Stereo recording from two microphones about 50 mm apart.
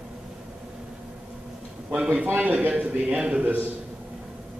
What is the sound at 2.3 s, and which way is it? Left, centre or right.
Speech, right.